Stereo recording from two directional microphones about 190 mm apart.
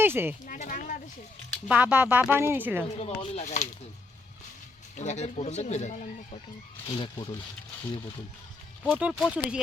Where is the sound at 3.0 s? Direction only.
30° left (ahead or behind).